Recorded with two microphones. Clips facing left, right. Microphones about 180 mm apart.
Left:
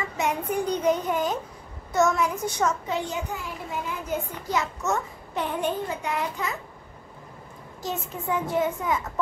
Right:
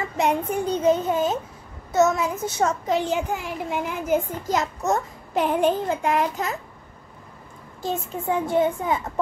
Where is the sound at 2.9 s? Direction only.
90° right; by 4.2 s 75° right (ahead or behind).